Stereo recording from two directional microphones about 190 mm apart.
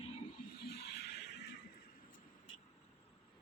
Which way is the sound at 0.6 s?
60° left (ahead or behind).